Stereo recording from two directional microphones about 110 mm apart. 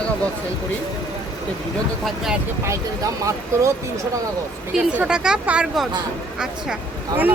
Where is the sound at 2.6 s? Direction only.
30° right (ahead or behind).